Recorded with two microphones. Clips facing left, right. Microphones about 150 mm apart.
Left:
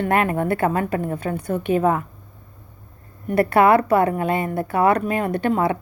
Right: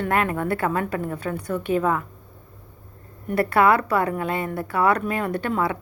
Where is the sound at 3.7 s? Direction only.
50° left (ahead or behind).